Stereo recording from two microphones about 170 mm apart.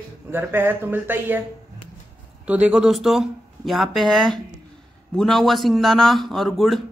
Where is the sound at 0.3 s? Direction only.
15° right (ahead or behind).